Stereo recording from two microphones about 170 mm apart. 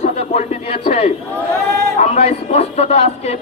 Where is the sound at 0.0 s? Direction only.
40° left (ahead or behind).